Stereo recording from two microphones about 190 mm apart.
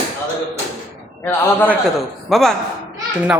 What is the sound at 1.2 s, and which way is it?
A man's voice, 10° left (ahead or behind).